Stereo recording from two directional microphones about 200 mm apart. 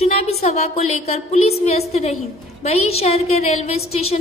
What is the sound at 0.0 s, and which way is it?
A woman's voice, 30° left (ahead or behind).